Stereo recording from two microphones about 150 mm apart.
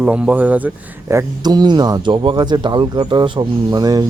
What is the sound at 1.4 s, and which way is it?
Speech, 30° right (ahead or behind).